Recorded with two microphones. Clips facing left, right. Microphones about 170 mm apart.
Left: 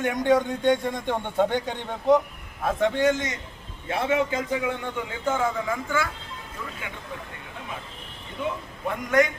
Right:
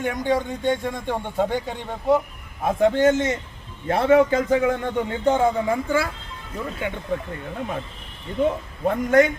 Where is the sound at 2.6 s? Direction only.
25° right (ahead or behind).